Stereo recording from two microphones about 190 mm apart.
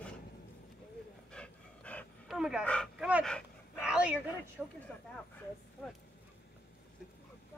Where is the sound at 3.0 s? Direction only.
5° right (ahead or behind).